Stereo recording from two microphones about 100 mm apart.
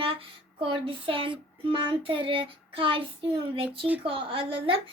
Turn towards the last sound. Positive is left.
turn(degrees=-65)  # may be behind; listen again after turning